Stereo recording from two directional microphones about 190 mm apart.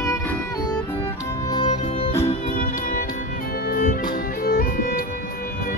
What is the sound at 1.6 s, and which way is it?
Music, 30° left (ahead or behind).